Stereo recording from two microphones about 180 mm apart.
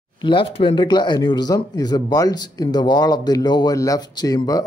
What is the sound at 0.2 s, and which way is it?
A man's voice, 30° left (ahead or behind).